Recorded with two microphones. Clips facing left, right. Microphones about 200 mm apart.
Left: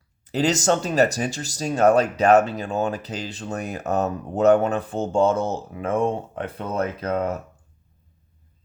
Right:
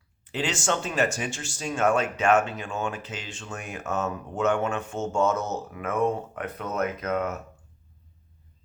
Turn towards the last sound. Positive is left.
turn(degrees=30)  # may be behind; listen again after turning